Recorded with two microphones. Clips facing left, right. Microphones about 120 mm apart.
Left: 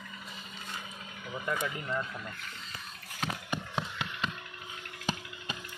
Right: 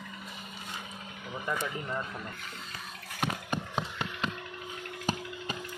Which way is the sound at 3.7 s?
40° right (ahead or behind).